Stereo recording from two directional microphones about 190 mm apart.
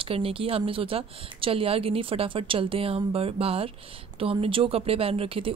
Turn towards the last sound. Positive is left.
turn(degrees=-30)  # may be behind; listen again after turning